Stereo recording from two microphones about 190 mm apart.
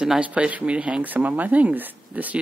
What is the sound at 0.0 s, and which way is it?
Speech, 5° right (ahead or behind).